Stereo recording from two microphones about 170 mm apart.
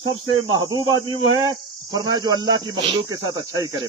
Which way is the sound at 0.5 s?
25° right (ahead or behind).